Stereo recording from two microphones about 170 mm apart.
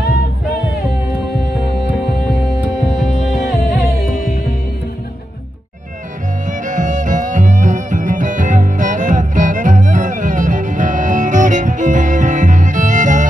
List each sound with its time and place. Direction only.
2.2 s music: centre (ahead or behind)
6.6 s music: 50° right (ahead or behind)